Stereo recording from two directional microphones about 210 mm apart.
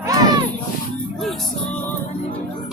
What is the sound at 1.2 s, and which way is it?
Music, centre (ahead or behind).